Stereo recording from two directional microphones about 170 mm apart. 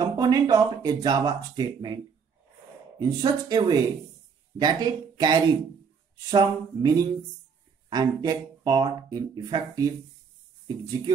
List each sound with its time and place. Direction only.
0.0 s speech: 20° right (ahead or behind)
3.0 s speech: 25° right (ahead or behind)